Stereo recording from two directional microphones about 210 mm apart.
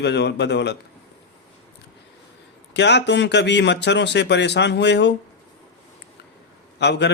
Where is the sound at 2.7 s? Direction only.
55° left (ahead or behind).